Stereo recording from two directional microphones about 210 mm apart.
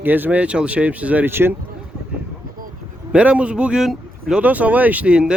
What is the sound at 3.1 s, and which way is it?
Speech, 5° right (ahead or behind).